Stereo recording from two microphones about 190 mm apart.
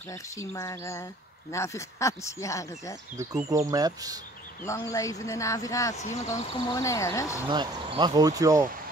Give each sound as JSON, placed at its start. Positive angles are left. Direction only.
{"t": 0.1, "sound": "speech", "side_deg": 15}
{"t": 3.2, "sound": "speech", "side_deg": -20}
{"t": 4.6, "sound": "speech", "side_deg": 15}
{"t": 5.9, "sound": "speech", "side_deg": 40}
{"t": 6.7, "sound": "speech", "side_deg": 15}
{"t": 7.4, "sound": "speech", "side_deg": -25}